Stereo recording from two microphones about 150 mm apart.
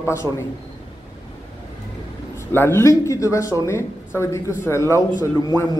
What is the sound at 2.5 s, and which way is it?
Speech, 15° left (ahead or behind).